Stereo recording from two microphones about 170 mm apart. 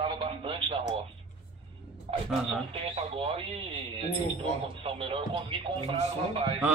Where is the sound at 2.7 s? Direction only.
35° right (ahead or behind).